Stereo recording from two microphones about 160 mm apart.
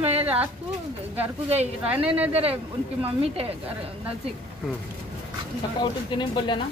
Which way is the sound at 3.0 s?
40° right (ahead or behind).